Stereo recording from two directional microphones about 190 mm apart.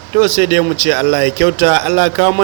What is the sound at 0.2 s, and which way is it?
Speech, 25° right (ahead or behind).